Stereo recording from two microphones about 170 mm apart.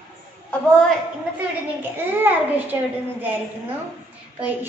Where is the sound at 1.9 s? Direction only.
10° right (ahead or behind).